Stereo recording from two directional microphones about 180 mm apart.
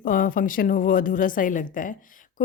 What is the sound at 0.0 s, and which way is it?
A woman's voice, 50° left (ahead or behind).